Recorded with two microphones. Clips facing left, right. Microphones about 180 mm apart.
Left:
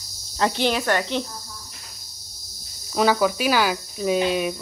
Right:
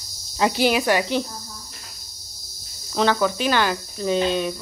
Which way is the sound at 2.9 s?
5° left (ahead or behind).